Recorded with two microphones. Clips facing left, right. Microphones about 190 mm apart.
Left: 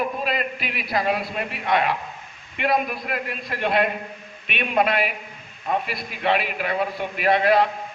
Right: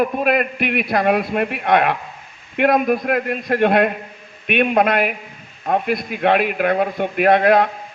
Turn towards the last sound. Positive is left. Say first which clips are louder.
# right 5 dB
turn(degrees=-50)  # may be behind; listen again after turning